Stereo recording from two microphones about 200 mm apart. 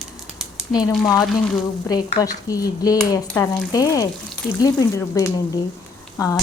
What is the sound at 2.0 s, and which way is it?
A woman's voice, 20° left (ahead or behind).